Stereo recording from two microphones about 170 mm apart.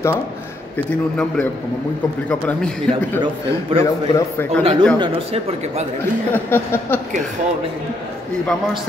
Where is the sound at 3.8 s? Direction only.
20° left (ahead or behind).